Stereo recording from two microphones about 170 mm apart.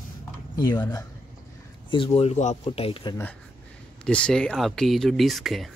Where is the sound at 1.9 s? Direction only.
35° left (ahead or behind).